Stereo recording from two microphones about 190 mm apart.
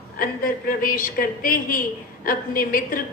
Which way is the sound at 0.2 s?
45° left (ahead or behind).